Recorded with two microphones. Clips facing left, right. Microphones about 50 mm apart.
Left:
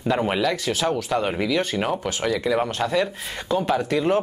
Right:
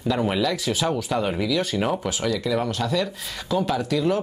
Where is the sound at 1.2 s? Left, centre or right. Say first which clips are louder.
Left 1 dB; centre.